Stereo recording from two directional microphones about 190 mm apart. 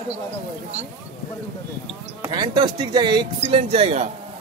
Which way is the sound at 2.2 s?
25° right (ahead or behind).